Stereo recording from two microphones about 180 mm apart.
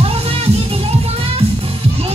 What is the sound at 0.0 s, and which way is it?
Music, 35° right (ahead or behind).